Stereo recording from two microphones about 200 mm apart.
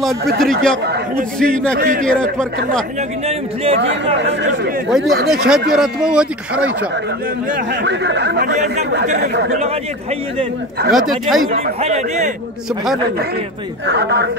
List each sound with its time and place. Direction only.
0.4 s speech: centre (ahead or behind)
1.8 s a man's voice: 45° right (ahead or behind)
2.0 s speech: 5° left (ahead or behind)
4.8 s speech: centre (ahead or behind)
7.5 s speech: 55° right (ahead or behind)
10.9 s speech: centre (ahead or behind)
11.4 s a man's voice: 40° right (ahead or behind)
13.8 s speech: 55° right (ahead or behind)